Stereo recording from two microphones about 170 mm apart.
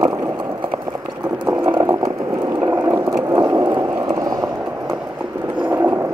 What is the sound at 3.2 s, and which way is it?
Vehicle, 20° right (ahead or behind).